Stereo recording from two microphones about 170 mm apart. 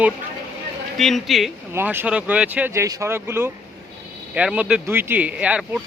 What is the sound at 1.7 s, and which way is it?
Speech, 10° right (ahead or behind).